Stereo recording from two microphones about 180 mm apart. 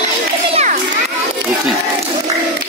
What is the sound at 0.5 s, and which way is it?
Children playing, 35° right (ahead or behind).